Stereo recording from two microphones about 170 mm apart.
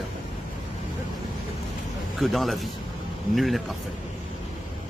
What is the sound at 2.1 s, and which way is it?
Speech, centre (ahead or behind).